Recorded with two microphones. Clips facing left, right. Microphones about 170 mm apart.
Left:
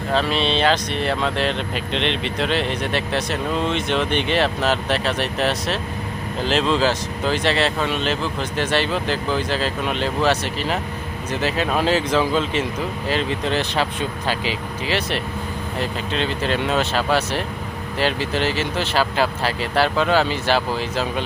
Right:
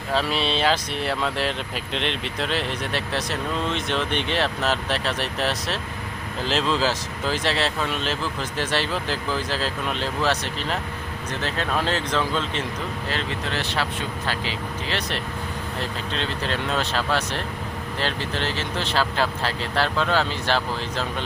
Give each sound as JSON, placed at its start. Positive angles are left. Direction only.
{"t": 0.1, "sound": "speech", "side_deg": -5}
{"t": 14.8, "sound": "speech", "side_deg": 5}